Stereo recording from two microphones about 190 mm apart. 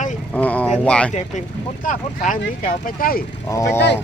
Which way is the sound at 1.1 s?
40° left (ahead or behind).